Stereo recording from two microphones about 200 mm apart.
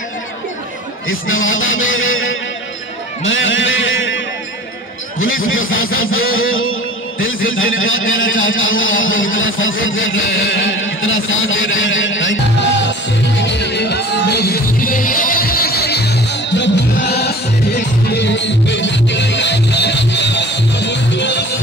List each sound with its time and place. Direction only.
1.0 s a man's voice: 85° left
3.3 s a sound: 75° left (ahead or behind)
5.2 s a man's voice: 85° left
6.0 s music: 90° left
7.2 s a man's voice: 80° left
11.0 s a sound: 80° left
13.4 s music: 60° left (ahead or behind)